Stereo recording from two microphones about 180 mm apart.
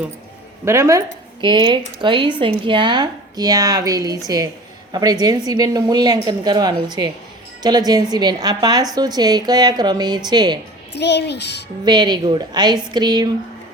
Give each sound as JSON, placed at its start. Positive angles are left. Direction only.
{"t": 0.6, "sound": "a woman's voice", "side_deg": -15}
{"t": 11.0, "sound": "a child's voice", "side_deg": 70}
{"t": 11.9, "sound": "a woman's voice", "side_deg": -25}